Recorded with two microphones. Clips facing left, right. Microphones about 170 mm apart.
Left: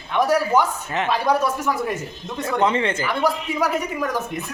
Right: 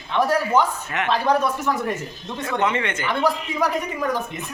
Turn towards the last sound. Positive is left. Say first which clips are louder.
# even
turn(degrees=5)  # may be behind; listen again after turning